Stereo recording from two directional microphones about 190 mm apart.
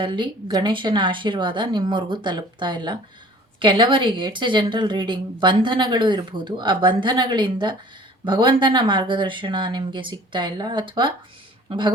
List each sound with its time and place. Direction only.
0.0 s a woman's voice: 25° right (ahead or behind)